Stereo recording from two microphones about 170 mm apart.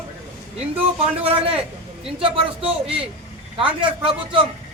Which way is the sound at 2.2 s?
30° right (ahead or behind).